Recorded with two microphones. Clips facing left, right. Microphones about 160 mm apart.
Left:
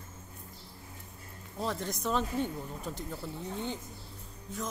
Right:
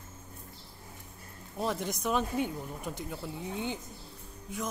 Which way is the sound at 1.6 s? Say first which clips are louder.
Right 2 dB; 15° right (ahead or behind).